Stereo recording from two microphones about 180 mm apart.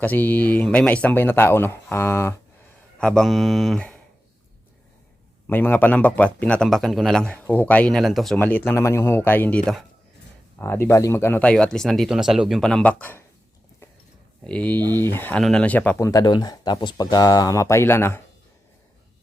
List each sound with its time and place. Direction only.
0.0 s speech: 10° left (ahead or behind)
5.5 s speech: 10° left (ahead or behind)
10.6 s speech: 15° left (ahead or behind)
14.4 s speech: 5° left (ahead or behind)